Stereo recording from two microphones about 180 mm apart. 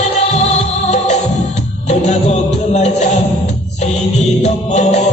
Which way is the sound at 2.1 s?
40° left (ahead or behind).